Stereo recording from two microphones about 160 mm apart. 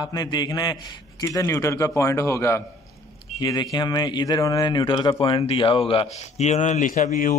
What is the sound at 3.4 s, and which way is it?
A man's voice, 25° left (ahead or behind).